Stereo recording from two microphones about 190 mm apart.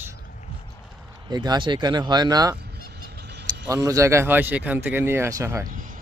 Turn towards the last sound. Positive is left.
turn(degrees=-45)  # may be behind; listen again after turning